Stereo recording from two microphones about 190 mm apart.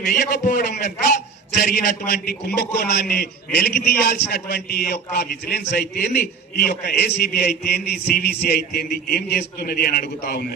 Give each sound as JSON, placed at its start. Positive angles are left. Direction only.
{"t": 0.0, "sound": "a man's voice", "side_deg": 55}